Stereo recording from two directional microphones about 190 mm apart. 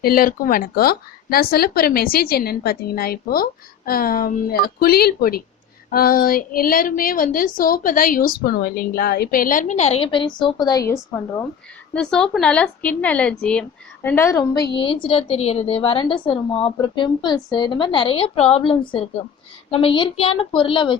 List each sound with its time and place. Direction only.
0.0 s a woman's voice: 50° left (ahead or behind); by 11.4 s 15° left (ahead or behind)
11.9 s a woman's voice: 5° left (ahead or behind)
15.0 s a woman's voice: 30° left (ahead or behind)